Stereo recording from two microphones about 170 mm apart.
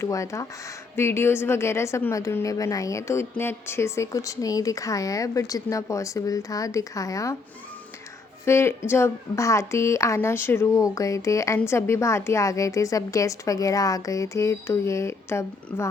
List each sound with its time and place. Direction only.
0.0 s a woman's voice: 20° left (ahead or behind)
8.4 s speech: 15° left (ahead or behind)